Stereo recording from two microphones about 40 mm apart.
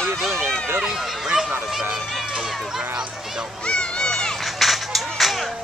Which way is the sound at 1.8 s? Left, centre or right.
Right.